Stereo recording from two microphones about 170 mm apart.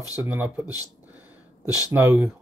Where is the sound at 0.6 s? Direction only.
20° left (ahead or behind).